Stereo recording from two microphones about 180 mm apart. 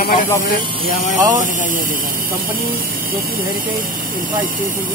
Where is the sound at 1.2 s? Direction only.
20° right (ahead or behind).